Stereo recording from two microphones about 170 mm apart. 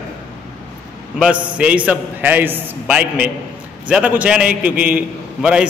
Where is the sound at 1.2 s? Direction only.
5° right (ahead or behind).